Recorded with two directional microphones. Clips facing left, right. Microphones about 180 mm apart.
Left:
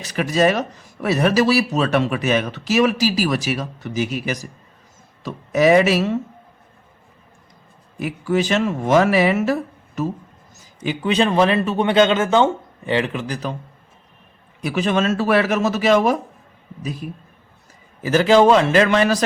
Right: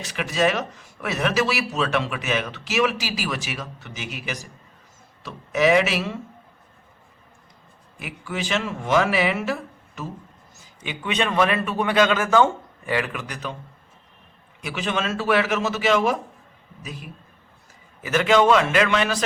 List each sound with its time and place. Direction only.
0.0 s speech: 40° left (ahead or behind)
7.9 s speech: 40° left (ahead or behind)
14.6 s speech: 40° left (ahead or behind)